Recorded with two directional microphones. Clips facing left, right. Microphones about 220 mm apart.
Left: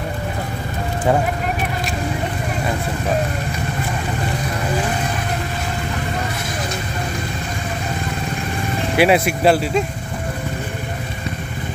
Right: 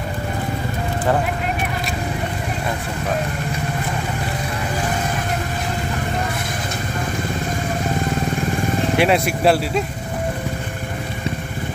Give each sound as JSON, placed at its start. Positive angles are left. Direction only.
{"t": 8.9, "sound": "speech", "side_deg": 5}